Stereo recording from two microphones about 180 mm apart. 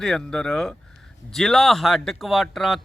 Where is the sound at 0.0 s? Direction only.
5° left (ahead or behind).